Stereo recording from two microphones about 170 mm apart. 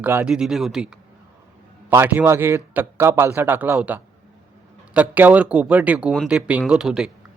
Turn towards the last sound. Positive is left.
turn(degrees=-5)  # may be behind; listen again after turning